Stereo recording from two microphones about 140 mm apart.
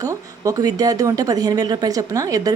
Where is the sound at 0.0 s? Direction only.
25° right (ahead or behind).